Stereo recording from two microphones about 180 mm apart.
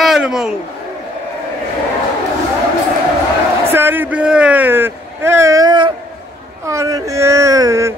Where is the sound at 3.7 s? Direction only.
10° right (ahead or behind).